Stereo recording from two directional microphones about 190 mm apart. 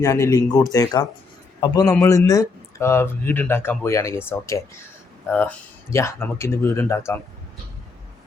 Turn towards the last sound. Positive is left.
turn(degrees=10)  # may be behind; listen again after turning